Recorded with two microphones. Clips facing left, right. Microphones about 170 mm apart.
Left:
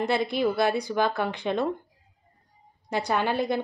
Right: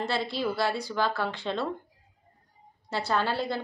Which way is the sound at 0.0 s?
20° left (ahead or behind).